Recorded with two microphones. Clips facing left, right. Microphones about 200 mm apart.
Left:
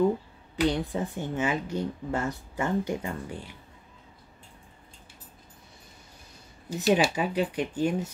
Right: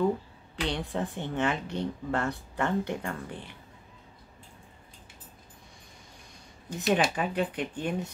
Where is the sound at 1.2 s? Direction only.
5° left (ahead or behind).